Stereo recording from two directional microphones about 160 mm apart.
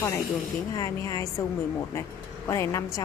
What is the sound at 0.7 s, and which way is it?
A woman's voice, 20° left (ahead or behind).